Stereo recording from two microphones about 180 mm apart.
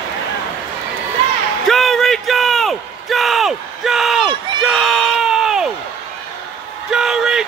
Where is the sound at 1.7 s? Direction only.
Centre (ahead or behind).